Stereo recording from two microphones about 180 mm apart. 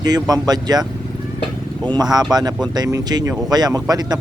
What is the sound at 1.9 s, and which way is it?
Speech, 20° right (ahead or behind).